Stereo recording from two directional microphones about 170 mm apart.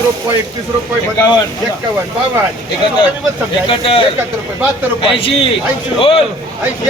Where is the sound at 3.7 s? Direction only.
30° left (ahead or behind).